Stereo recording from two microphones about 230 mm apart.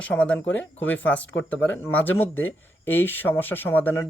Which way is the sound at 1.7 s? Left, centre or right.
Centre.